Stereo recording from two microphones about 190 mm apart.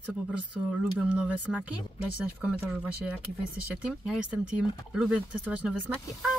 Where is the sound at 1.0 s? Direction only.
5° right (ahead or behind).